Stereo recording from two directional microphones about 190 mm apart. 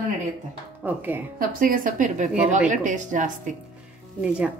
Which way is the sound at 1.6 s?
45° right (ahead or behind).